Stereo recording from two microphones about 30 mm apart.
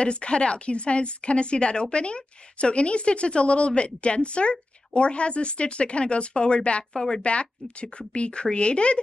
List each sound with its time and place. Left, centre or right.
0.0 s a woman's voice: left
6.9 s a woman's voice: left
7.2 s a woman's voice: left